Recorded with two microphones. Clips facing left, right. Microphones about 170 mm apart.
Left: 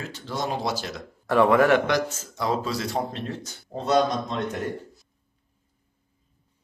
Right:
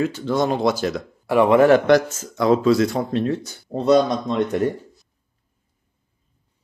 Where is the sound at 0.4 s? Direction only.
90° right.